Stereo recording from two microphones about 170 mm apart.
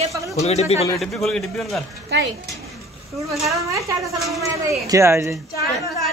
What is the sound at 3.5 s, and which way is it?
Speech, 20° right (ahead or behind).